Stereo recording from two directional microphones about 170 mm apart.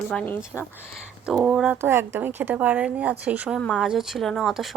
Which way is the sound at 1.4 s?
5° right (ahead or behind).